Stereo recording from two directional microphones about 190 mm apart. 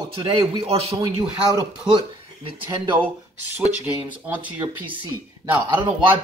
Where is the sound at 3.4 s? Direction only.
10° right (ahead or behind).